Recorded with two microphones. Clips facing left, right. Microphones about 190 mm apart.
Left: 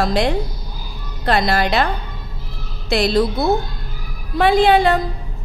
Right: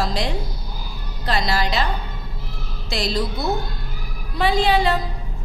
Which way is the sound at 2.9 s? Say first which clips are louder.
Left 8 dB; 60° left (ahead or behind).